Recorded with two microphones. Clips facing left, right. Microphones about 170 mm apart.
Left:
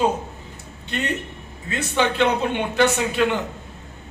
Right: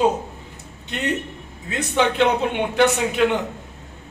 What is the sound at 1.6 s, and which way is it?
Speech, 15° right (ahead or behind).